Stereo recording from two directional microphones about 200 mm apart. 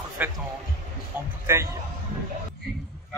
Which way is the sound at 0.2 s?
10° right (ahead or behind).